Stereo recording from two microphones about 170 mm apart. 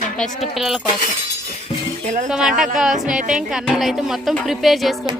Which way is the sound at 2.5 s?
50° right (ahead or behind).